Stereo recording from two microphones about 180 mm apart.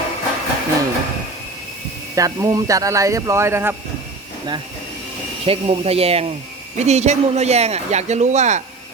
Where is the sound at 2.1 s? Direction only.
20° right (ahead or behind).